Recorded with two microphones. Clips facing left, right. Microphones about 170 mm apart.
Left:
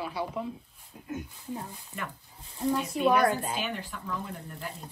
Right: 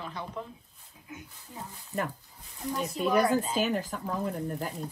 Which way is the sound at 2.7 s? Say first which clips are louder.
Even; 40° right (ahead or behind).